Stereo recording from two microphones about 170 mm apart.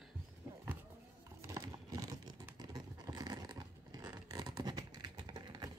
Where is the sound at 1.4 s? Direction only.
20° right (ahead or behind).